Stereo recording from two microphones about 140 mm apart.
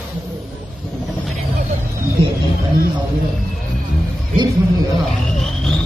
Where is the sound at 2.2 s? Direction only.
45° right (ahead or behind).